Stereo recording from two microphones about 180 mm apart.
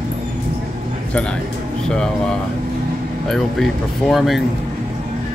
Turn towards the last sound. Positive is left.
turn(degrees=0)  # may be behind; listen again after turning